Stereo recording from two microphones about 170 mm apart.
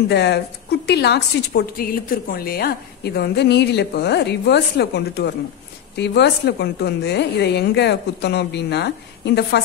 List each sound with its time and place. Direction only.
0.1 s a woman's voice: 75° left (ahead or behind)
1.5 s a woman's voice: 60° left (ahead or behind); by 5.3 s 75° left (ahead or behind)
5.9 s a woman's voice: 90° left